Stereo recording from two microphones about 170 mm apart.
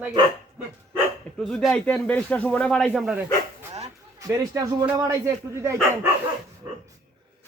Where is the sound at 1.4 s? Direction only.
5° left (ahead or behind).